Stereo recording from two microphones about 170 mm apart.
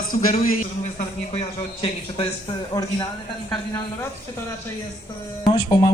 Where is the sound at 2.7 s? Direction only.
25° left (ahead or behind).